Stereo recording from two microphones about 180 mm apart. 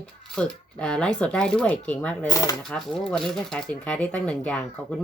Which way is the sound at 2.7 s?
5° left (ahead or behind).